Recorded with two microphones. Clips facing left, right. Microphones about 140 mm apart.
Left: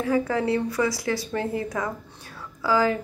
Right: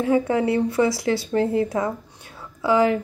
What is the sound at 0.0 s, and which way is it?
A woman's voice, 25° right (ahead or behind).